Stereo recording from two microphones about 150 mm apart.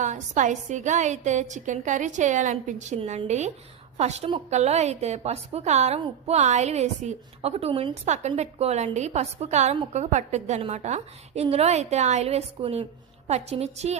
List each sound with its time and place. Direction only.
0.0 s a woman's voice: 55° right (ahead or behind)